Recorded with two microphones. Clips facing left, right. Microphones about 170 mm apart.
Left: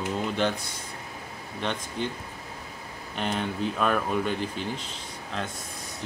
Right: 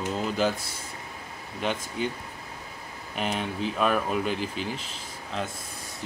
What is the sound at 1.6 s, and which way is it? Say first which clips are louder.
Speech: right 1 dB; 5° right (ahead or behind).